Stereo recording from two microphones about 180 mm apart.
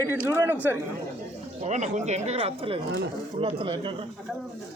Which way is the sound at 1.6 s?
40° right (ahead or behind).